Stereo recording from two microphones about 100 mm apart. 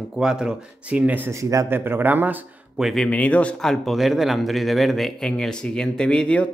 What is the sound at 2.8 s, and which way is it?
Speech, 5° left (ahead or behind).